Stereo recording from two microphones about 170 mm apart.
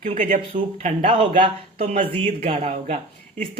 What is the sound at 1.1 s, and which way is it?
A man's voice, 35° right (ahead or behind).